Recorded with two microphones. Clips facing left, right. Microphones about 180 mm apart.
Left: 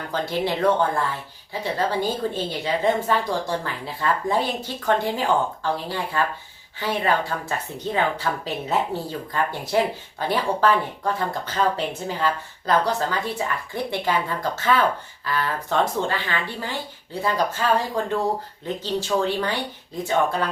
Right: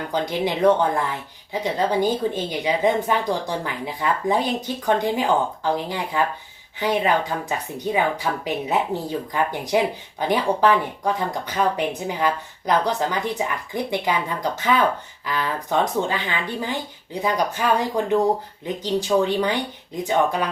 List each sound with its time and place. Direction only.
0.1 s speech: 15° right (ahead or behind)